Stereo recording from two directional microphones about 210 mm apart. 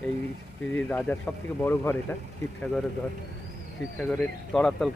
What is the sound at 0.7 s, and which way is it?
Speech, 10° left (ahead or behind).